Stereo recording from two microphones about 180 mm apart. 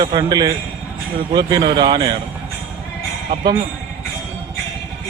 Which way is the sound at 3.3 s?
30° right (ahead or behind).